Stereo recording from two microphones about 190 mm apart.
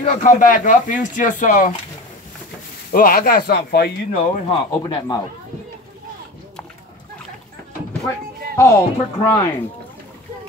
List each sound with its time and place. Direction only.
0.0 s speech: 35° left (ahead or behind)
2.9 s speech: 50° left (ahead or behind)
4.1 s speech: 30° left (ahead or behind)
8.5 s speech: 15° left (ahead or behind)